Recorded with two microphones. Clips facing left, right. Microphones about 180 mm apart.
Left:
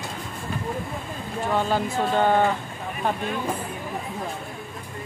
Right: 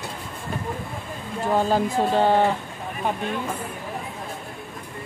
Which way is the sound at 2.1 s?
30° right (ahead or behind).